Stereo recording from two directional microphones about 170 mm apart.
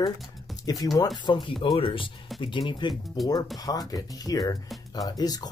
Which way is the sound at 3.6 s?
20° left (ahead or behind).